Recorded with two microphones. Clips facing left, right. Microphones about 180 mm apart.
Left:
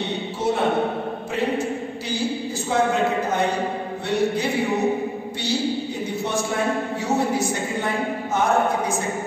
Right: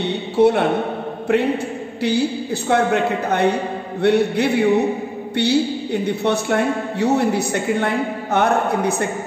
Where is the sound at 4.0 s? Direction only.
65° right (ahead or behind).